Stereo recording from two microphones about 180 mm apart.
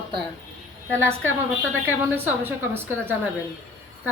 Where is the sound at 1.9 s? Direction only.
10° right (ahead or behind).